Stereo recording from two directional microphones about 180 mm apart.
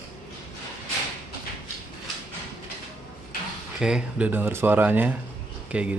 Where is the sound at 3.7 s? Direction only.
5° right (ahead or behind).